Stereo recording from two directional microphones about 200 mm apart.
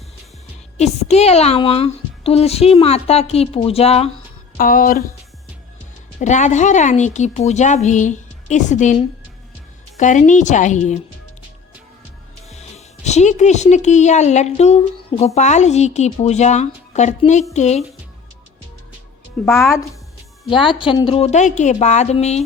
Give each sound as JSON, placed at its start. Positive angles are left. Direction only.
{"t": 0.8, "sound": "a woman's voice", "side_deg": 35}
{"t": 4.5, "sound": "speech", "side_deg": 45}
{"t": 6.1, "sound": "a woman's voice", "side_deg": 35}
{"t": 12.5, "sound": "a woman's voice", "side_deg": 35}
{"t": 19.5, "sound": "speech", "side_deg": 0}
{"t": 20.5, "sound": "a woman's voice", "side_deg": 25}